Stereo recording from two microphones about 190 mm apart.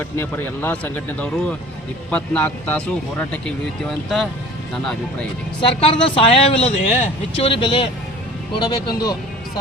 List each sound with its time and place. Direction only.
0.0 s speech: 10° left (ahead or behind)
4.7 s speech: centre (ahead or behind)
5.5 s speech: 30° left (ahead or behind)